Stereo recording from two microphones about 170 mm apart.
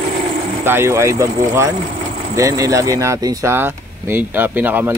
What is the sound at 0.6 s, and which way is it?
Speech, 15° right (ahead or behind).